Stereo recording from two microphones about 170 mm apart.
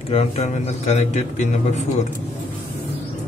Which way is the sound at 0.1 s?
35° left (ahead or behind).